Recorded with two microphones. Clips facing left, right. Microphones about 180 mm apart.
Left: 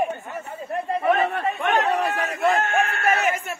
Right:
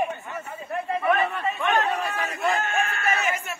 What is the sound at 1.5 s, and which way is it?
Chatter, 70° left (ahead or behind).